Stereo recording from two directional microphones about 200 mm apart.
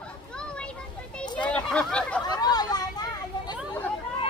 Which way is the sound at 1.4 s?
5° left (ahead or behind).